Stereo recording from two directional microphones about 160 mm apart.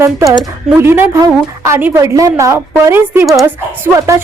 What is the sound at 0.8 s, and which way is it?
Speech, 15° right (ahead or behind).